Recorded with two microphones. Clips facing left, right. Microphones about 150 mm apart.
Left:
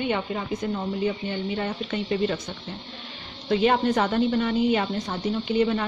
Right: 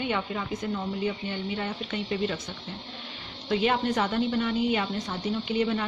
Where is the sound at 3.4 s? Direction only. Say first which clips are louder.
Left 4 dB; 40° left (ahead or behind).